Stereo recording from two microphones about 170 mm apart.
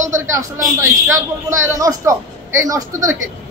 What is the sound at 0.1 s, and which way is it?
A man's voice, 15° right (ahead or behind).